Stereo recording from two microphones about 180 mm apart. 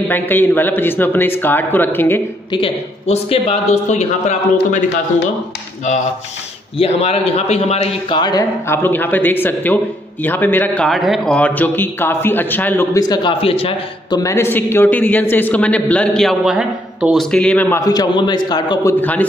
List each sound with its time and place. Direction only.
0.1 s a man's voice: 10° left (ahead or behind)
2.5 s a man's voice: 30° left (ahead or behind)
6.8 s a man's voice: 35° left (ahead or behind)
8.2 s a man's voice: 20° left (ahead or behind)
14.2 s a man's voice: 15° left (ahead or behind)
18.9 s a man's voice: 10° left (ahead or behind)